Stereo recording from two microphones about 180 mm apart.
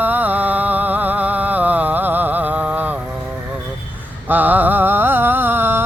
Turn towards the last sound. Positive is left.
turn(degrees=-10)  # may be behind; listen again after turning